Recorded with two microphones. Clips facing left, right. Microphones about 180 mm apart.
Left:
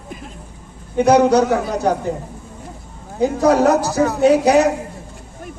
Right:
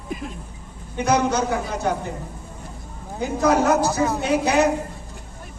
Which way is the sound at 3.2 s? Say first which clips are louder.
Left 5 dB; 35° left (ahead or behind).